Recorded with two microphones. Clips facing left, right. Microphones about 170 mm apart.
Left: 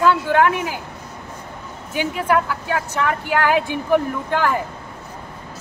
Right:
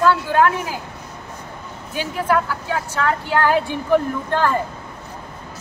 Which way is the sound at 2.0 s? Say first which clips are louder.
Left 1 dB; 15° left (ahead or behind).